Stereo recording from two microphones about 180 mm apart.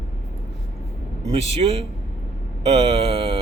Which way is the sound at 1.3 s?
30° right (ahead or behind).